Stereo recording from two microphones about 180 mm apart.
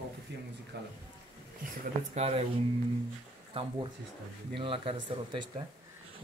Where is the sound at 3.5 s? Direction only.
30° right (ahead or behind).